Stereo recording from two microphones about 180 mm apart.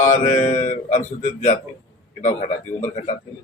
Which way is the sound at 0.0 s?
45° left (ahead or behind).